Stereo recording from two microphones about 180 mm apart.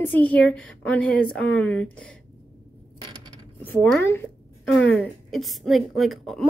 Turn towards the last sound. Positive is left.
turn(degrees=0)  # may be behind; listen again after turning